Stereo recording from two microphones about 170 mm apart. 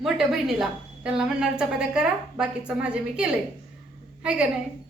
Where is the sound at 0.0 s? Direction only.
5° right (ahead or behind).